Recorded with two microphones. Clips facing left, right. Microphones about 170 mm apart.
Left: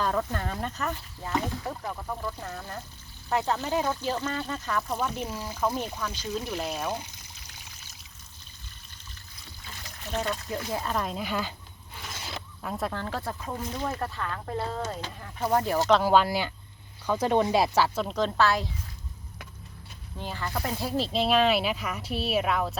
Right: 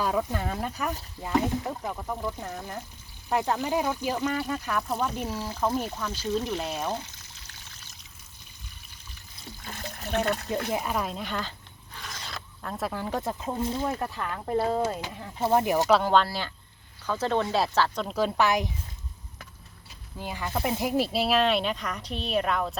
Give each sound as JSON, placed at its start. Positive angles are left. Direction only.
{"t": 0.0, "sound": "speech", "side_deg": -10}
{"t": 4.8, "sound": "speech", "side_deg": 0}
{"t": 6.3, "sound": "speech", "side_deg": 5}
{"t": 9.6, "sound": "trickle", "side_deg": -60}
{"t": 10.7, "sound": "speech", "side_deg": -15}
{"t": 12.0, "sound": "roaring cats", "side_deg": 5}
{"t": 12.6, "sound": "speech", "side_deg": 0}
{"t": 14.0, "sound": "speech", "side_deg": -15}
{"t": 15.4, "sound": "speech", "side_deg": -25}
{"t": 16.0, "sound": "speech", "side_deg": 10}
{"t": 18.1, "sound": "speech", "side_deg": -10}
{"t": 20.1, "sound": "speech", "side_deg": -10}